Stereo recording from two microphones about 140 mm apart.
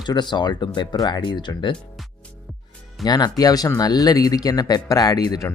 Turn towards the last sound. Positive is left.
turn(degrees=25)  # may be behind; listen again after turning